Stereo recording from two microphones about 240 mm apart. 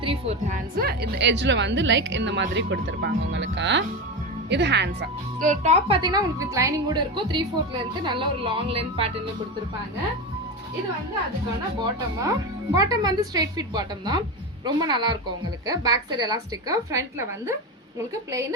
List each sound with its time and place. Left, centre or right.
0.0 s a woman's voice: right
5.5 s a woman's voice: right
12.7 s a woman's voice: centre